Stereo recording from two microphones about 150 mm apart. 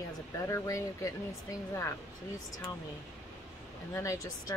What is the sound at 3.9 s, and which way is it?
Speech, 20° left (ahead or behind).